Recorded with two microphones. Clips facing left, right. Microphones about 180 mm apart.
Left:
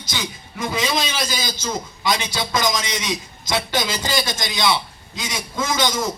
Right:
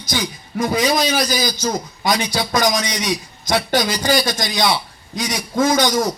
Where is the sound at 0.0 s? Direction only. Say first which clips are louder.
Right 6 dB; 25° left (ahead or behind).